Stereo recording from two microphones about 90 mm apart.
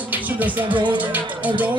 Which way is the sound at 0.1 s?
20° right (ahead or behind).